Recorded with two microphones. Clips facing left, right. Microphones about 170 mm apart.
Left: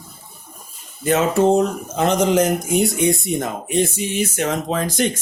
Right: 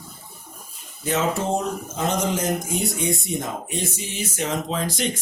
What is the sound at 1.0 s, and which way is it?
Speech, 60° left (ahead or behind).